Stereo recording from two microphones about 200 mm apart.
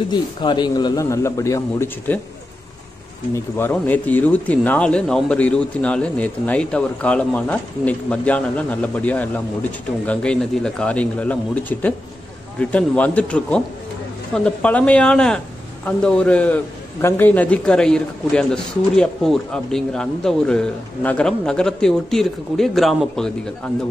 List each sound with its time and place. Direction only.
0.1 s speech: 20° left (ahead or behind)
3.3 s speech: 10° left (ahead or behind)